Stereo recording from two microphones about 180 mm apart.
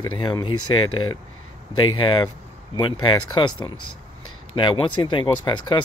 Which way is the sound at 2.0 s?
30° left (ahead or behind).